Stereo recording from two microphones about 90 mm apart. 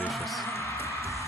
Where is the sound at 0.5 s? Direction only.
35° left (ahead or behind).